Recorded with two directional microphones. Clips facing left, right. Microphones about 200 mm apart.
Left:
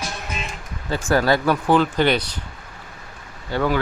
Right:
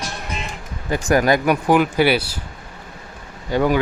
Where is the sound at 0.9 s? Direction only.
15° right (ahead or behind).